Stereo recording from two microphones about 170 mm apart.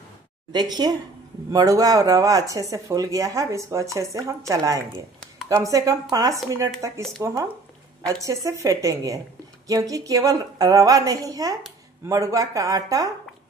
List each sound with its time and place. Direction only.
0.5 s speech: 25° right (ahead or behind)